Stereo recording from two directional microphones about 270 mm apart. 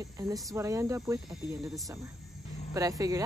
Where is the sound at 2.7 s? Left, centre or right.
Centre.